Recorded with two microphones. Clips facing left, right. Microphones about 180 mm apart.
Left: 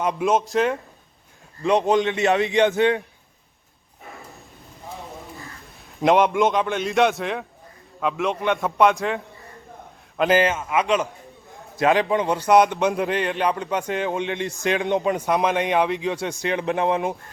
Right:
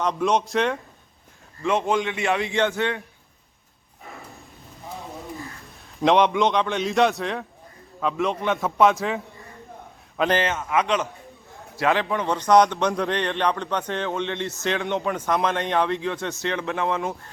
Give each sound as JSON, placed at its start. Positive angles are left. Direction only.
{"t": 0.0, "sound": "a man's voice", "side_deg": 10}
{"t": 1.6, "sound": "a man's voice", "side_deg": 20}
{"t": 6.0, "sound": "a man's voice", "side_deg": 5}